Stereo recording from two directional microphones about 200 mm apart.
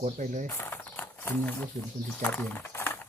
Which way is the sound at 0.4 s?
10° left (ahead or behind).